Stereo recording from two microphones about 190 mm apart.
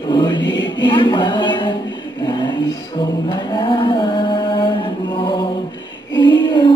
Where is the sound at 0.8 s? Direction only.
25° left (ahead or behind).